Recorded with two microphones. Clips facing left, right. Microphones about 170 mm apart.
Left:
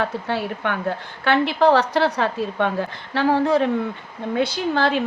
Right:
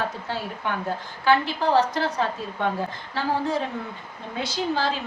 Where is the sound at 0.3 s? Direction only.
70° left (ahead or behind).